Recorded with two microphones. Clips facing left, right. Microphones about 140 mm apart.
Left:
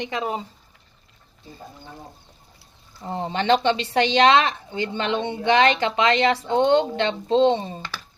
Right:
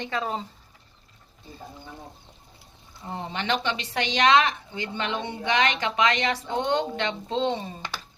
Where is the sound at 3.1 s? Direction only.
35° left (ahead or behind).